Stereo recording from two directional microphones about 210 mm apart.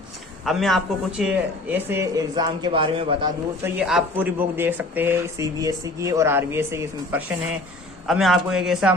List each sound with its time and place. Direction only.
0.4 s speech: centre (ahead or behind); by 3.3 s 25° right (ahead or behind)
3.6 s speech: 5° right (ahead or behind)